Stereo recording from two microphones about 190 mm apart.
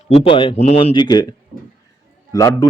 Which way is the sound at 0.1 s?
30° left (ahead or behind).